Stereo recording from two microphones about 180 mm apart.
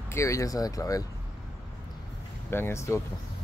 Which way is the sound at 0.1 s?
15° left (ahead or behind).